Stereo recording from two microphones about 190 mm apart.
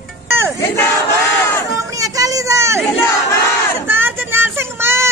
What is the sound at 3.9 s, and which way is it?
Child singing, 10° right (ahead or behind).